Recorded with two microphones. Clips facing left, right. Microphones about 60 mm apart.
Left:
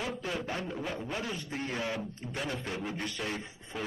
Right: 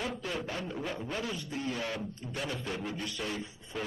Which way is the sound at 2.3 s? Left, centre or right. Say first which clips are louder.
Left 1 dB; left.